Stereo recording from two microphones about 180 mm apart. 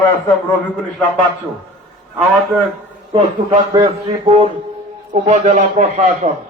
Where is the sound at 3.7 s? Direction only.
25° right (ahead or behind).